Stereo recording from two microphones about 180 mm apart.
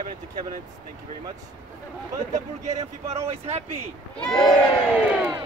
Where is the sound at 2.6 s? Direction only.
35° right (ahead or behind).